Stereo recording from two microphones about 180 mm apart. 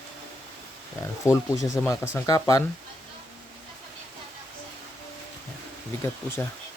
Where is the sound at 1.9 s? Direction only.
20° left (ahead or behind).